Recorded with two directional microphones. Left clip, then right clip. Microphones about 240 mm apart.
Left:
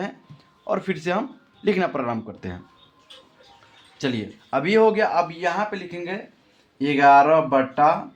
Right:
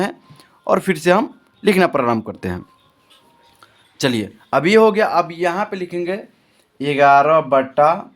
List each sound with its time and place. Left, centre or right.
0.0 s speech: right
3.9 s speech: right